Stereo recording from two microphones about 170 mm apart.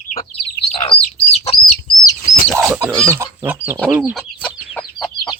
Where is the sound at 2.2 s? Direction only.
50° left (ahead or behind).